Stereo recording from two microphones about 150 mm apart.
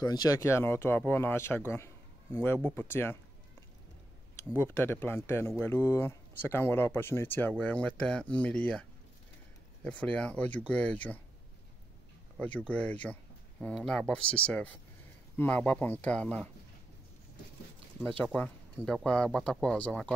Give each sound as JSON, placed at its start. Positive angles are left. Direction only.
{"t": 0.0, "sound": "speech", "side_deg": 25}
{"t": 4.6, "sound": "speech", "side_deg": 15}
{"t": 9.8, "sound": "speech", "side_deg": 10}
{"t": 12.4, "sound": "speech", "side_deg": 10}
{"t": 18.2, "sound": "speech", "side_deg": 5}